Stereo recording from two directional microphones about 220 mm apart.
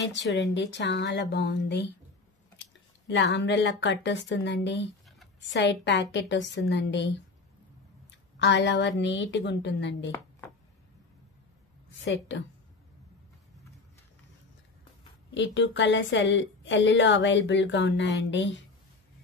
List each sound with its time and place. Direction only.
0.1 s speech: 55° left (ahead or behind)
3.1 s a woman's voice: 55° left (ahead or behind)
8.4 s speech: 55° left (ahead or behind)
12.0 s a woman's voice: 55° left (ahead or behind)
15.3 s a woman's voice: 55° left (ahead or behind)